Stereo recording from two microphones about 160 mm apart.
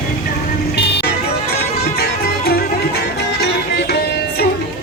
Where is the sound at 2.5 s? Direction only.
80° left.